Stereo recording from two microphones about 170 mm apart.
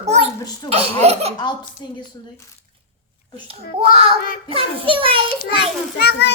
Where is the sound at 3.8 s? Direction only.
35° right (ahead or behind).